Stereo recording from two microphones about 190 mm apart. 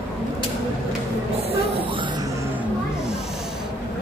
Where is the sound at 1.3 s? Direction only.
30° right (ahead or behind).